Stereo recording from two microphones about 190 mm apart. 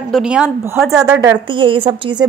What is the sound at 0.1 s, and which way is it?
A woman's voice, 5° right (ahead or behind).